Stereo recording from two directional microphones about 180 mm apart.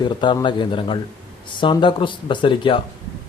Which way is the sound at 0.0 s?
25° left (ahead or behind).